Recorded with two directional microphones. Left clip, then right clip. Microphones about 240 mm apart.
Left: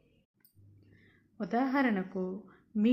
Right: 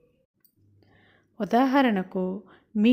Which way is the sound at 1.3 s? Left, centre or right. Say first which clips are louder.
Right 9 dB; right.